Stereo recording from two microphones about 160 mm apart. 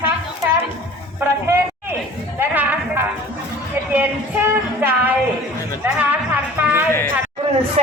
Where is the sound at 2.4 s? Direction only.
15° right (ahead or behind).